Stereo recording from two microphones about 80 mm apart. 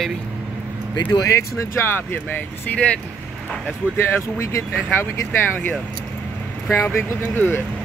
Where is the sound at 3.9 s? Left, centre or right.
Left.